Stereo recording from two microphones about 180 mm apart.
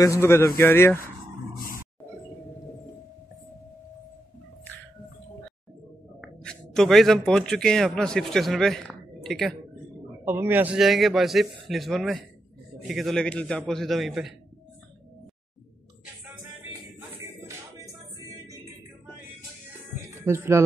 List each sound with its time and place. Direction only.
0.0 s speech: 15° left (ahead or behind)
6.2 s a man's voice: 5° left (ahead or behind)
10.2 s a man's voice: 10° right (ahead or behind)
20.2 s speech: 15° right (ahead or behind)